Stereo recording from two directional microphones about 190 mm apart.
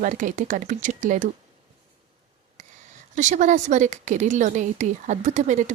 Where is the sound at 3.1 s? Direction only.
40° right (ahead or behind).